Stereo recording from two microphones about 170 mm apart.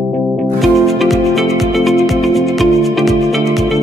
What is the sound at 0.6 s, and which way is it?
Music, centre (ahead or behind).